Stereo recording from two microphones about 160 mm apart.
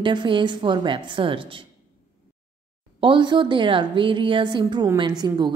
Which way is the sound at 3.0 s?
30° right (ahead or behind).